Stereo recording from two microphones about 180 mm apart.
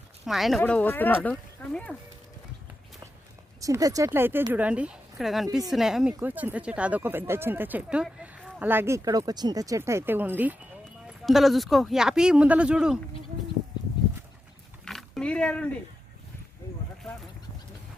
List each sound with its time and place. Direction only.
0.3 s speech: centre (ahead or behind)
3.6 s speech: 20° right (ahead or behind)
14.8 s a sound: centre (ahead or behind)